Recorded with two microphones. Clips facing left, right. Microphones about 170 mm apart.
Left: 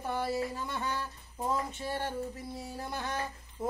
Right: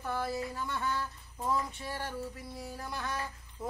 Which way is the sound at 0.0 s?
20° left (ahead or behind).